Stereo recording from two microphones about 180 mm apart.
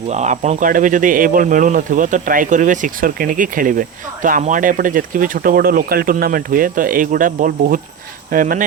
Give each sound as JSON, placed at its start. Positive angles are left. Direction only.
{"t": 0.1, "sound": "speech", "side_deg": -40}